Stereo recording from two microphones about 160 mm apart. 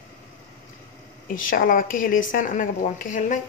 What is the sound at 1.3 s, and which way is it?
Speech, 60° left (ahead or behind).